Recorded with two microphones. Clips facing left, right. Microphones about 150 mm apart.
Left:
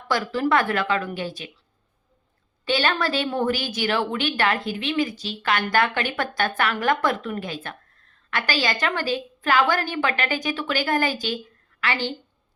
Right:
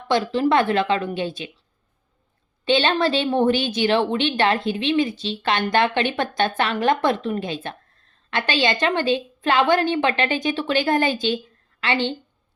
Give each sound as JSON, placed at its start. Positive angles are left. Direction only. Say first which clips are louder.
{"t": 0.1, "sound": "a woman's voice", "louder": "right 3 dB", "side_deg": -25}
{"t": 2.6, "sound": "a woman's voice", "louder": "right 4 dB", "side_deg": -25}